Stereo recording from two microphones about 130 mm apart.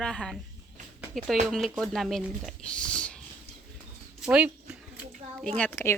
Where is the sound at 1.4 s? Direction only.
Centre (ahead or behind).